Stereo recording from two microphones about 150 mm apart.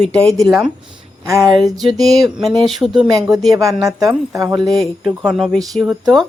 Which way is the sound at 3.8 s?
20° right (ahead or behind).